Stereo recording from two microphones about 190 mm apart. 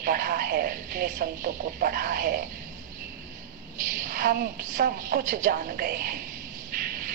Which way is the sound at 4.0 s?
45° right (ahead or behind).